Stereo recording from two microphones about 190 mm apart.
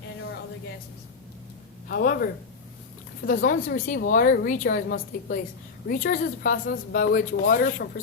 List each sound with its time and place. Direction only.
1.9 s a woman's voice: 50° left (ahead or behind)